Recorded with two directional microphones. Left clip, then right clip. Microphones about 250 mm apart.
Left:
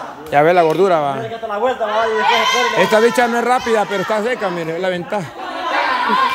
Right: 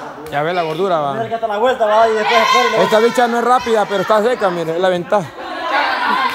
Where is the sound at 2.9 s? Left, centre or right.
Centre.